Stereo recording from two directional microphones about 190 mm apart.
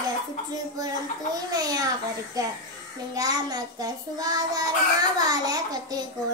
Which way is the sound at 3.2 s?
20° right (ahead or behind).